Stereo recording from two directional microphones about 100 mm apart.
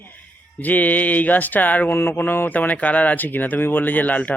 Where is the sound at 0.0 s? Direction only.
20° left (ahead or behind).